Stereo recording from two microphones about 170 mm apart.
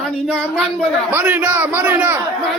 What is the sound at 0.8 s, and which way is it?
A man's voice, 10° right (ahead or behind).